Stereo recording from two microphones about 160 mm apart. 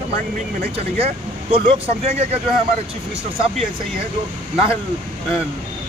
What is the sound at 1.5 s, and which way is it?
Speech, 40° right (ahead or behind).